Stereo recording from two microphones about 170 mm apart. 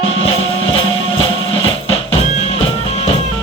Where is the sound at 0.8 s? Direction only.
30° left (ahead or behind).